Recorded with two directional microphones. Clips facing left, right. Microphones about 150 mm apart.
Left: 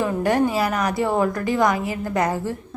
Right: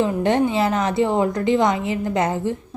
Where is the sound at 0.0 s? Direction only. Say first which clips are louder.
Right 1 dB; 25° right (ahead or behind).